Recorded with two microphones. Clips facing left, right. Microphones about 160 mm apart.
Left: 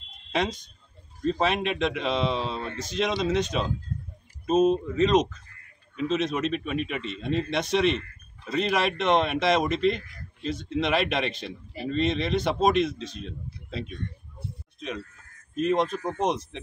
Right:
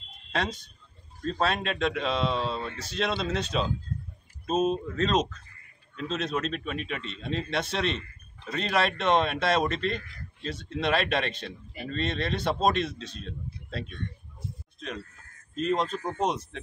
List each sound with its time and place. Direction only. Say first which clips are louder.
0.3 s a man's voice: left 3 dB; 15° left (ahead or behind)
7.2 s a man's voice: left 5 dB; 65° left (ahead or behind)
7.5 s a man's voice: left 6 dB; 15° left (ahead or behind)
15.5 s a man's voice: left 3 dB; 15° left (ahead or behind)